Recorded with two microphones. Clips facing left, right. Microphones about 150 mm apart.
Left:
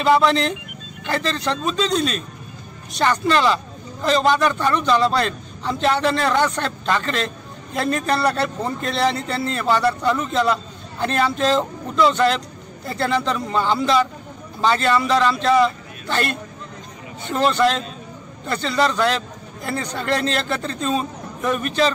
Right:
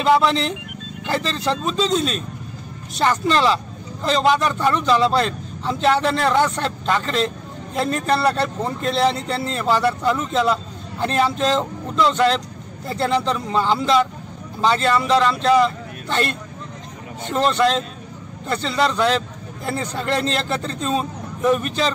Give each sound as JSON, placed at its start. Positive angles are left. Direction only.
{"t": 0.0, "sound": "a man's voice", "side_deg": 0}
{"t": 17.3, "sound": "a man's voice", "side_deg": 0}